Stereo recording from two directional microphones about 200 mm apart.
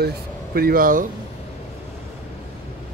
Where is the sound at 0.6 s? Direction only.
45° right (ahead or behind).